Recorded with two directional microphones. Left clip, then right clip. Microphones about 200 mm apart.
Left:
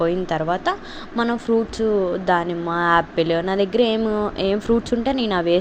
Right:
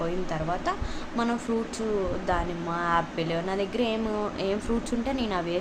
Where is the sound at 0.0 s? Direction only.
30° left (ahead or behind).